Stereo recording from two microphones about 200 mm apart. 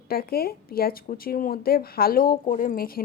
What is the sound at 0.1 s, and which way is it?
Speech, 50° left (ahead or behind).